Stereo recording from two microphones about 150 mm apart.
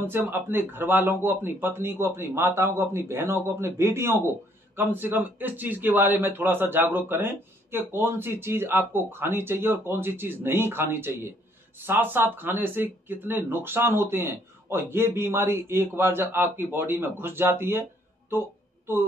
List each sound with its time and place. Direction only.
0.0 s speech: 15° right (ahead or behind)